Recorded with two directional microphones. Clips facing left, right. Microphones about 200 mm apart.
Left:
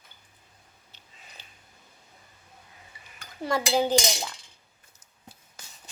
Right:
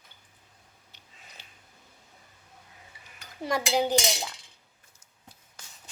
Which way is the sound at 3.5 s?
15° right (ahead or behind).